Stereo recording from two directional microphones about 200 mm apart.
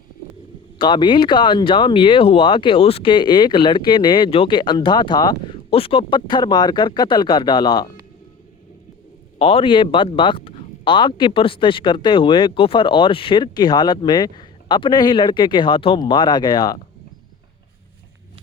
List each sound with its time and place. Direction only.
0.8 s speech: 25° left (ahead or behind)
9.4 s speech: 30° left (ahead or behind)